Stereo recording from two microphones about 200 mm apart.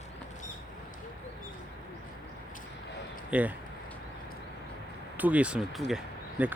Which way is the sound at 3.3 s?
5° right (ahead or behind).